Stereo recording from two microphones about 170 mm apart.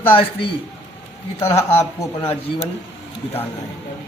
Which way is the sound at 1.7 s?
15° left (ahead or behind).